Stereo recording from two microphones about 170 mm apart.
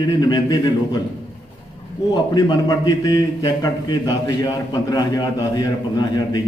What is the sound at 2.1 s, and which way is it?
A man's voice, 20° left (ahead or behind).